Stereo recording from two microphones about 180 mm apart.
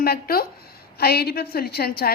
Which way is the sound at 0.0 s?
55° left (ahead or behind).